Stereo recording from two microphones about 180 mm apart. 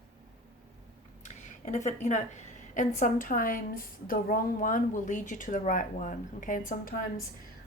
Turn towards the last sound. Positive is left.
turn(degrees=50)  # may be behind; listen again after turning